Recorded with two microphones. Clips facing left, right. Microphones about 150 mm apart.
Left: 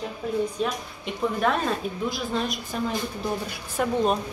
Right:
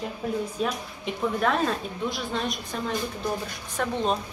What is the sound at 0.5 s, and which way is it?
A woman's voice, centre (ahead or behind).